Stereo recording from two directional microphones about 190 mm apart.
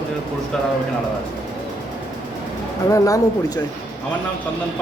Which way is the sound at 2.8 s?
15° left (ahead or behind).